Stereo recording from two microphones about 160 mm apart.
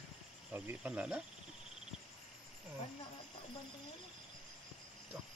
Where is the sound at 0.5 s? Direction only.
10° right (ahead or behind).